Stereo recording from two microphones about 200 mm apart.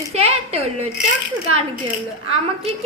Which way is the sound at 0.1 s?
30° right (ahead or behind).